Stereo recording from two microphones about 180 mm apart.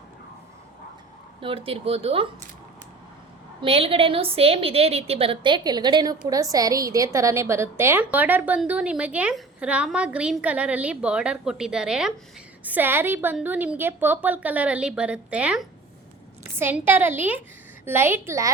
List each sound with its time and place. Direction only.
1.4 s speech: 30° right (ahead or behind)
3.6 s a woman's voice: 30° right (ahead or behind); by 18.5 s 15° right (ahead or behind)